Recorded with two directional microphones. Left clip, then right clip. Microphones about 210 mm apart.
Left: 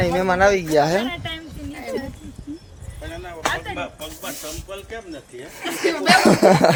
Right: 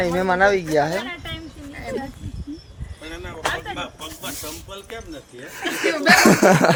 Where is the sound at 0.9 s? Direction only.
30° left (ahead or behind).